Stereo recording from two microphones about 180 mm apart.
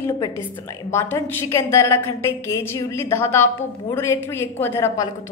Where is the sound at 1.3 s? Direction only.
15° left (ahead or behind).